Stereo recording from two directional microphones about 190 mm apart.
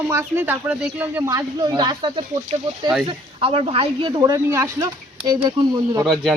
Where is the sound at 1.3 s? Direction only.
20° right (ahead or behind).